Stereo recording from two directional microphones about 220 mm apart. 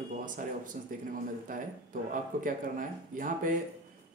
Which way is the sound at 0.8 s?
35° right (ahead or behind).